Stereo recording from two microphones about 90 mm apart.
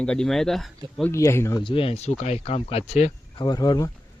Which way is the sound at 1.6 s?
75° left (ahead or behind).